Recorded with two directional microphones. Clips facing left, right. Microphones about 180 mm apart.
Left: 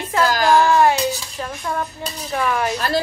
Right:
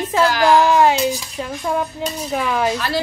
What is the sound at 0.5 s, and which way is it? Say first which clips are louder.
A woman's voice: even; 15° right (ahead or behind).